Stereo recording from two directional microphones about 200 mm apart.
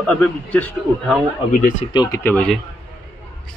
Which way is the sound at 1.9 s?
20° left (ahead or behind).